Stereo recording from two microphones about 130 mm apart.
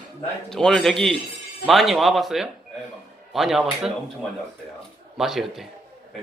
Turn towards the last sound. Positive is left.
turn(degrees=0)  # may be behind; listen again after turning